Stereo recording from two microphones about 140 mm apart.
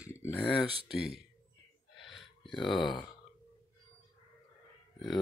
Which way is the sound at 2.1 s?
Centre (ahead or behind).